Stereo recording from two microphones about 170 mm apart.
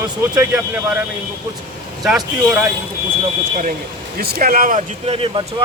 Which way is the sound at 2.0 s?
5° right (ahead or behind).